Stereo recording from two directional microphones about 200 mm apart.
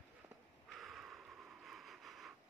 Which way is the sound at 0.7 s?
Centre (ahead or behind).